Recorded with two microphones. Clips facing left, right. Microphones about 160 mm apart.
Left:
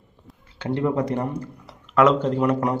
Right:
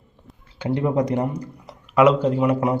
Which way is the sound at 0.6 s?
15° right (ahead or behind).